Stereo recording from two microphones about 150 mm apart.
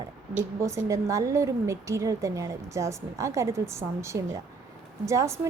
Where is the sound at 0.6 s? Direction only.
20° right (ahead or behind).